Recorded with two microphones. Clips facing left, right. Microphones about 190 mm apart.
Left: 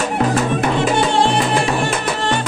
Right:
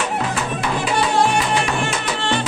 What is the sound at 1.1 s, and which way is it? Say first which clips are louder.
Music: left 2 dB; 30° left (ahead or behind).